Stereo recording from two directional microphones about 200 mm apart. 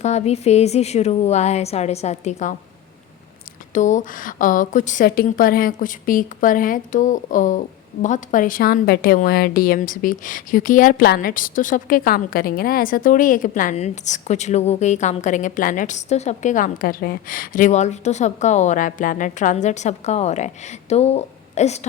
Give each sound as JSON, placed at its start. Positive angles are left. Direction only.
{"t": 0.0, "sound": "a woman's voice", "side_deg": 35}
{"t": 3.8, "sound": "a woman's voice", "side_deg": 40}